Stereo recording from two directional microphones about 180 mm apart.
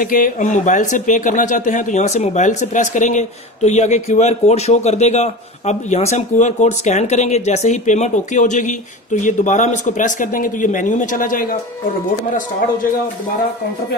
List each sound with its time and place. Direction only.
0.0 s speech: 50° left (ahead or behind)